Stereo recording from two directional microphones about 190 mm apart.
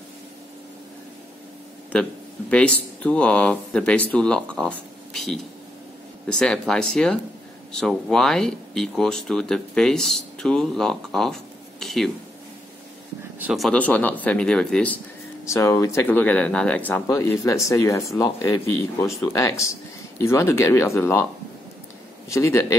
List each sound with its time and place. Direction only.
2.5 s speech: 5° left (ahead or behind)
13.4 s speech: centre (ahead or behind)
22.3 s speech: 15° left (ahead or behind)